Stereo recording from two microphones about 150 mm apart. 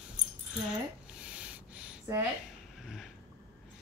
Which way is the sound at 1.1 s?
5° right (ahead or behind).